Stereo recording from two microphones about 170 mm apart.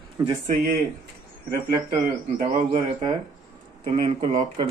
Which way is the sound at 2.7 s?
30° right (ahead or behind).